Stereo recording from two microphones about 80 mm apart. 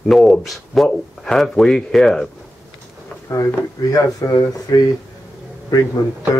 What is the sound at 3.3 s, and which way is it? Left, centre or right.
Speech, left.